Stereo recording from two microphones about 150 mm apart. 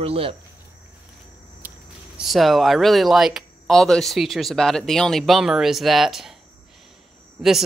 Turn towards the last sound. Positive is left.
turn(degrees=0)  # may be behind; listen again after turning